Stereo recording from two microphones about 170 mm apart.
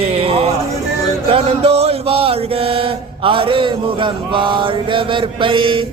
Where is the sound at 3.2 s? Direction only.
30° right (ahead or behind).